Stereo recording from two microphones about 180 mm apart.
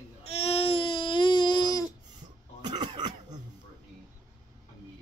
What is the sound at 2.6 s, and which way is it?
Cough, 25° right (ahead or behind).